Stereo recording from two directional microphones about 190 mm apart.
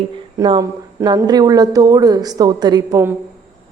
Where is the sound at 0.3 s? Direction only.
25° right (ahead or behind).